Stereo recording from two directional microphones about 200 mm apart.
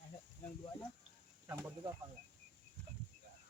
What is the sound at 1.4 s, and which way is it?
Speech, 10° right (ahead or behind).